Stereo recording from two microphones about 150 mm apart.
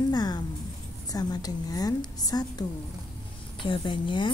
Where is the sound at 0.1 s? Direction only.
25° left (ahead or behind).